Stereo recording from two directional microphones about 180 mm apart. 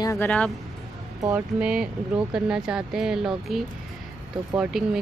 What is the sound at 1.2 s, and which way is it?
Speech, 10° right (ahead or behind).